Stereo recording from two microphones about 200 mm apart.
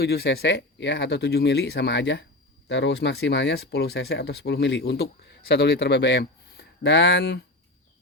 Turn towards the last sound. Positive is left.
turn(degrees=60)  # may be behind; listen again after turning